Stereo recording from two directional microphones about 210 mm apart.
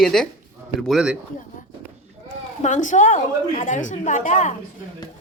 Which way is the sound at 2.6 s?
35° left (ahead or behind).